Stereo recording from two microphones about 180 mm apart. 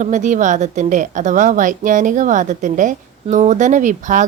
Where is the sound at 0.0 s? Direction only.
45° right (ahead or behind).